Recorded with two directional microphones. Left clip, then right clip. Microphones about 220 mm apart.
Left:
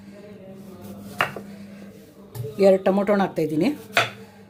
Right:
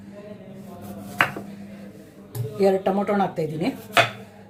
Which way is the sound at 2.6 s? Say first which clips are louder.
Left 3 dB; 50° left (ahead or behind).